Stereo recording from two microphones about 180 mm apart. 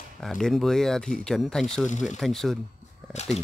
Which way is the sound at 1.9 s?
40° left (ahead or behind).